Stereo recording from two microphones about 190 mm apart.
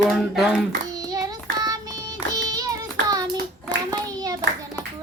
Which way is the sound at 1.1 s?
20° right (ahead or behind).